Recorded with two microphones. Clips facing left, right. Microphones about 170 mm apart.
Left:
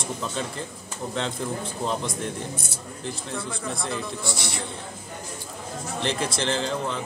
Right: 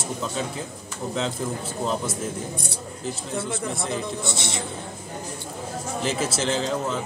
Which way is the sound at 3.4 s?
20° right (ahead or behind).